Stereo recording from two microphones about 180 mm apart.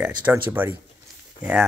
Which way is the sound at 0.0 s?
10° right (ahead or behind).